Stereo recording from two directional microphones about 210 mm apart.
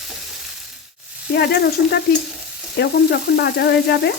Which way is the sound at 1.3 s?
50° left (ahead or behind).